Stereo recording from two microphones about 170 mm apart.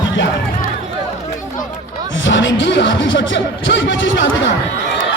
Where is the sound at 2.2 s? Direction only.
90° left.